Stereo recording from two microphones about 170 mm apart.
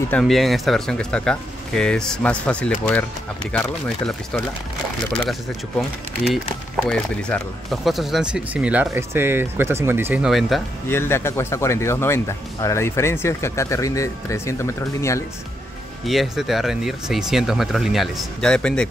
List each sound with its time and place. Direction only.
0.1 s speech: centre (ahead or behind)
6.9 s speech: 5° left (ahead or behind)
10.9 s speech: 15° left (ahead or behind)
16.1 s speech: centre (ahead or behind)